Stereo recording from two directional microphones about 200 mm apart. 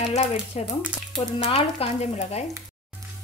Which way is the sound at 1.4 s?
25° left (ahead or behind).